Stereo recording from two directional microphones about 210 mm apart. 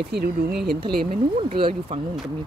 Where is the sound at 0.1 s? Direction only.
50° right (ahead or behind).